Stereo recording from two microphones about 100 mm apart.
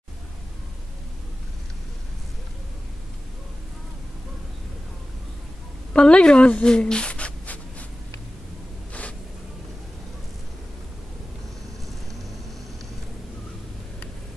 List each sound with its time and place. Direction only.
5.9 s speech: 10° left (ahead or behind)